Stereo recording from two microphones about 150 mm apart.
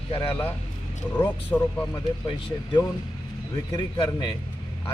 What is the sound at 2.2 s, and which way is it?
Speech, 30° left (ahead or behind).